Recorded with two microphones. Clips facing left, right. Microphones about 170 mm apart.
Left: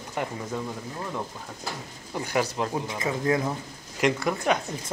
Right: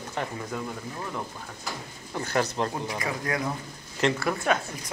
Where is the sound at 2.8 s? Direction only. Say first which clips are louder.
Left 4 dB; 20° left (ahead or behind).